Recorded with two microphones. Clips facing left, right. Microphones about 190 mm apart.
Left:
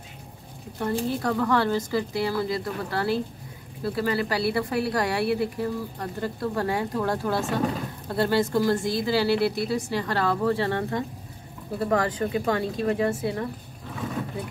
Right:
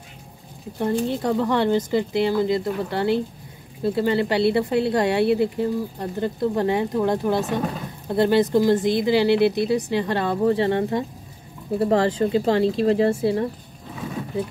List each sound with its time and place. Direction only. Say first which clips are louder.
1.0 s speech: right 3 dB; 20° right (ahead or behind)